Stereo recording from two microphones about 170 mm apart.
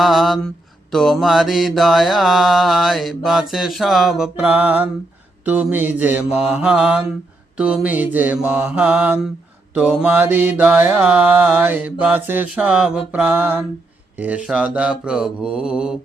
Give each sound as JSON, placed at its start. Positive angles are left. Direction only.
{"t": 0.0, "sound": "mantra", "side_deg": 0}